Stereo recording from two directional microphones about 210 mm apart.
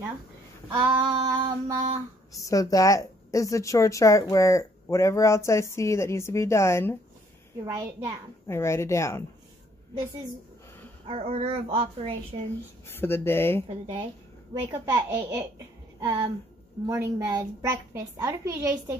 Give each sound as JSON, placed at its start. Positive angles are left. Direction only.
{"t": 0.7, "sound": "a child's voice", "side_deg": -20}
{"t": 2.4, "sound": "speech", "side_deg": 15}
{"t": 8.5, "sound": "speech", "side_deg": 10}
{"t": 11.1, "sound": "a child's voice", "side_deg": -30}
{"t": 12.8, "sound": "speech", "side_deg": 10}
{"t": 14.5, "sound": "a woman's voice", "side_deg": -15}